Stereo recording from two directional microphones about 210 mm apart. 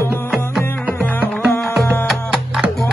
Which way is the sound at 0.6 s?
10° left (ahead or behind).